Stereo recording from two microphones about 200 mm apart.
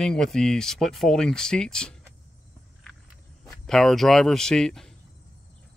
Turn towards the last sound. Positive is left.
turn(degrees=0)  # may be behind; listen again after turning